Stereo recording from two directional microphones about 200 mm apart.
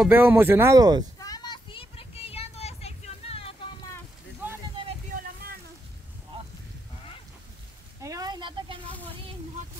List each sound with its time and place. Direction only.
0.0 s speech: 10° right (ahead or behind)
1.2 s vehicle: 20° left (ahead or behind)
8.0 s a sound: 15° right (ahead or behind)